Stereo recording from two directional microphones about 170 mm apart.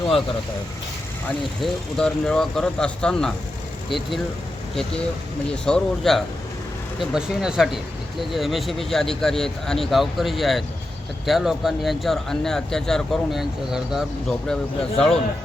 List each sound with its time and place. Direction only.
1.6 s speech: 5° left (ahead or behind)
5.6 s speech: 5° left (ahead or behind)